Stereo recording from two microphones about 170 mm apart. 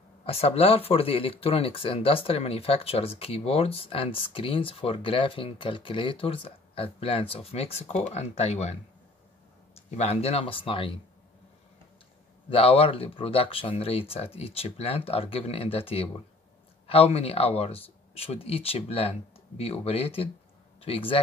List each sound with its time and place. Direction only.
0.2 s speech: 35° left (ahead or behind)
9.8 s speech: 40° left (ahead or behind)
12.4 s speech: 35° left (ahead or behind)